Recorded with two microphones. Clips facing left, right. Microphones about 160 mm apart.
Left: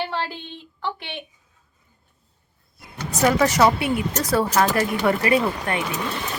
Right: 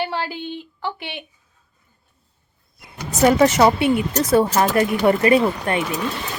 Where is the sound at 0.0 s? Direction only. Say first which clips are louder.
Right 3 dB; 5° right (ahead or behind).